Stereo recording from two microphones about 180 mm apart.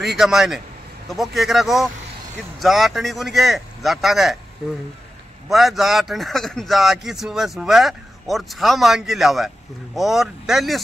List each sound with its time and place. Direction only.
0.0 s speech: centre (ahead or behind)
5.5 s speech: centre (ahead or behind)